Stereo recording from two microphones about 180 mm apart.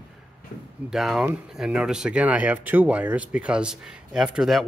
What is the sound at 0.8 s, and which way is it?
Speech, centre (ahead or behind).